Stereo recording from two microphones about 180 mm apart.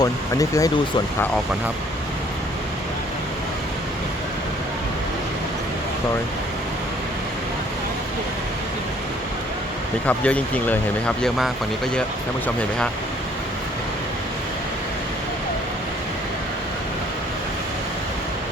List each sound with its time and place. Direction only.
0.0 s speech: 20° left (ahead or behind)
10.1 s speech: 10° left (ahead or behind)